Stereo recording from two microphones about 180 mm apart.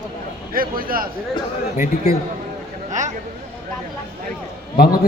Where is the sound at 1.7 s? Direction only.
50° left (ahead or behind).